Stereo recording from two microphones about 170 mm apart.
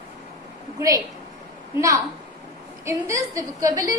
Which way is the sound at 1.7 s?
20° right (ahead or behind).